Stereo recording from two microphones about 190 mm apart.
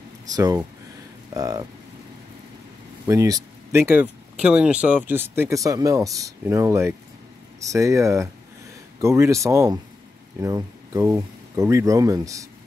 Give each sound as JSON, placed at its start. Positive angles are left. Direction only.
{"t": 0.3, "sound": "speech", "side_deg": -20}
{"t": 3.1, "sound": "speech", "side_deg": -20}